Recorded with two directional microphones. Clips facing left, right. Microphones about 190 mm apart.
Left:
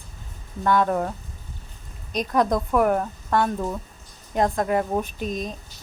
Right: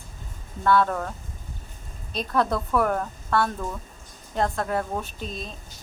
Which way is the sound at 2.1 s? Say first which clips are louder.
Left 3 dB; 15° left (ahead or behind).